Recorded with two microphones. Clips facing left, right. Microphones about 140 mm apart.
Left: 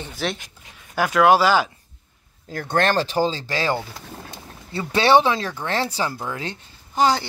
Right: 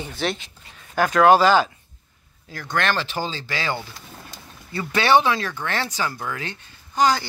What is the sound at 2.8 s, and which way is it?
Speech, 35° left (ahead or behind).